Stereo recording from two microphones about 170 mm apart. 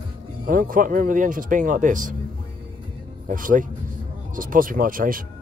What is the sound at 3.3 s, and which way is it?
Speech, 50° right (ahead or behind).